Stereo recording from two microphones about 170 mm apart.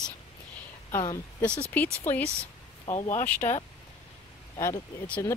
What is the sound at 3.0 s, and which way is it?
Speech, 40° left (ahead or behind).